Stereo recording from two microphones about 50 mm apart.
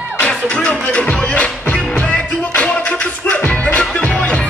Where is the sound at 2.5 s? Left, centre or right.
Left.